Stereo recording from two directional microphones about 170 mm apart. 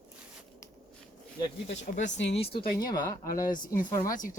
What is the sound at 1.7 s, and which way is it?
Speech, 45° left (ahead or behind).